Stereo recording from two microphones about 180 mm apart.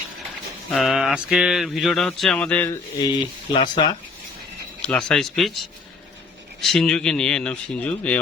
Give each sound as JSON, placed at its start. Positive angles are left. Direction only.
{"t": 0.7, "sound": "speech", "side_deg": 0}
{"t": 3.5, "sound": "speech", "side_deg": 25}
{"t": 4.8, "sound": "speech", "side_deg": 5}